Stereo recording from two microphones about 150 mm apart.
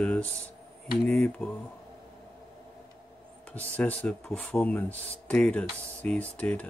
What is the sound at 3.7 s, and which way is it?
Speech, 10° left (ahead or behind).